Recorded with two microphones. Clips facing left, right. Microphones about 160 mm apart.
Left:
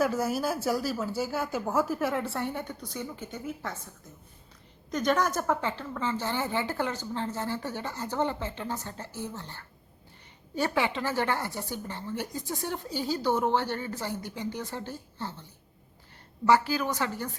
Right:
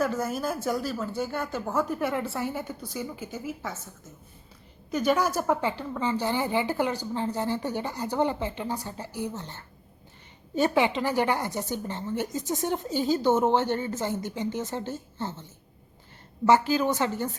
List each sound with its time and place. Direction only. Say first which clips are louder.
0.0 s speech: even; 5° left (ahead or behind)
4.9 s a woman's voice: right 2 dB; 10° right (ahead or behind)
16.5 s a woman's voice: right 3 dB; 25° right (ahead or behind)